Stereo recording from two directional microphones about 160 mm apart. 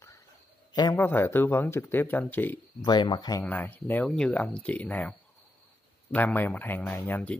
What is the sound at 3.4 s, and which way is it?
Speech, 10° left (ahead or behind).